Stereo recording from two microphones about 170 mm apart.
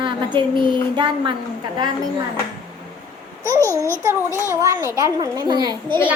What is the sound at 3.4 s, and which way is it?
Speech, 20° right (ahead or behind).